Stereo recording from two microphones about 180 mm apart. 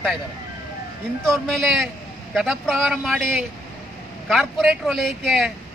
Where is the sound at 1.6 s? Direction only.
Centre (ahead or behind).